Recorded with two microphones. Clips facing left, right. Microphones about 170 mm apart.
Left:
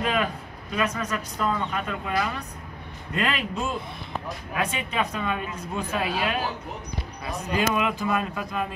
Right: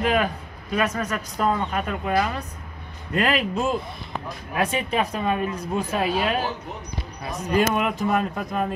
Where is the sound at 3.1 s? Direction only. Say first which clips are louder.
Right 5 dB; 35° right (ahead or behind).